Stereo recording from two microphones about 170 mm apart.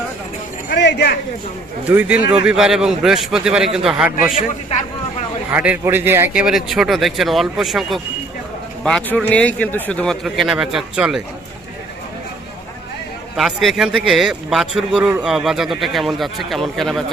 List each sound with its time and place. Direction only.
0.7 s a sound: 85° left
1.9 s speech: 10° right (ahead or behind)
5.5 s speech: 10° right (ahead or behind)
13.3 s speech: centre (ahead or behind)